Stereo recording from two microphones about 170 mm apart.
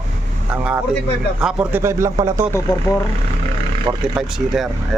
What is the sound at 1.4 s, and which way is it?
Speech, 5° right (ahead or behind).